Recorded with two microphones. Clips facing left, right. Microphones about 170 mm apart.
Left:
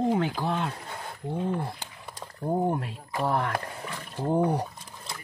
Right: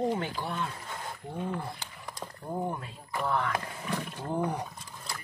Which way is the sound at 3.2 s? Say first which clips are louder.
Left 3 dB; 45° left (ahead or behind).